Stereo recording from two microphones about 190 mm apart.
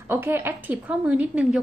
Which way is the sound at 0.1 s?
10° right (ahead or behind).